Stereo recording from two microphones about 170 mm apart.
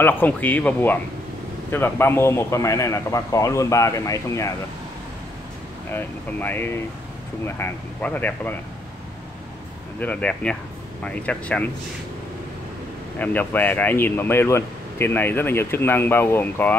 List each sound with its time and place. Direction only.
0.0 s speech: 10° left (ahead or behind)
5.9 s speech: 10° left (ahead or behind)
9.9 s speech: 10° left (ahead or behind)
13.2 s speech: 10° left (ahead or behind)